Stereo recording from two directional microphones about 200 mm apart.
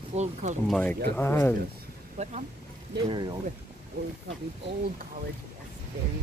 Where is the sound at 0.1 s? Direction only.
35° right (ahead or behind).